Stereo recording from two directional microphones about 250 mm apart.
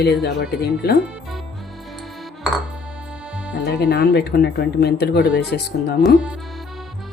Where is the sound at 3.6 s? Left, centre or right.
Left.